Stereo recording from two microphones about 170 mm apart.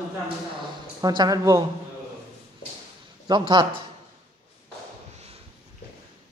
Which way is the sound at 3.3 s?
25° right (ahead or behind).